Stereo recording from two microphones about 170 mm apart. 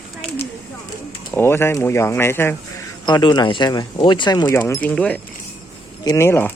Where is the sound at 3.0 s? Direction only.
25° left (ahead or behind).